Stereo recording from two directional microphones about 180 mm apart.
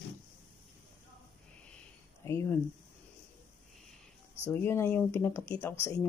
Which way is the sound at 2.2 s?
15° left (ahead or behind).